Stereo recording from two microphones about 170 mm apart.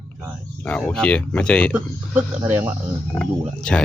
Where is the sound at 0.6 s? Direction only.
5° left (ahead or behind).